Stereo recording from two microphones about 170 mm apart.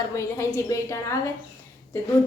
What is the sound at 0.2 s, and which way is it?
Speech, 15° left (ahead or behind).